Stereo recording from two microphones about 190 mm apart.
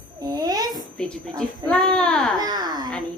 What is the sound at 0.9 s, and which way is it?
A woman's voice, 5° left (ahead or behind).